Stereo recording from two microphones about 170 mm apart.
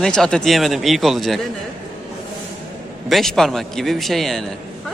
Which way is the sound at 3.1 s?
Centre (ahead or behind).